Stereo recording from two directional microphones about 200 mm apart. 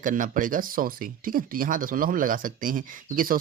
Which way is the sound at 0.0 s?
40° right (ahead or behind).